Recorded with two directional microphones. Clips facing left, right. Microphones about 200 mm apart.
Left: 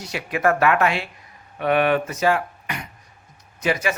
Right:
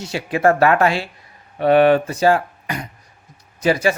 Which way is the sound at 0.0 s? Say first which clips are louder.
Right 4 dB; 30° right (ahead or behind).